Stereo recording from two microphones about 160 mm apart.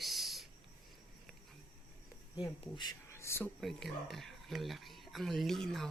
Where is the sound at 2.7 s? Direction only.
25° left (ahead or behind).